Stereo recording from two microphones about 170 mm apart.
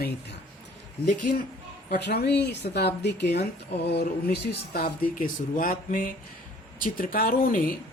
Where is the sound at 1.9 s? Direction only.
75° left (ahead or behind).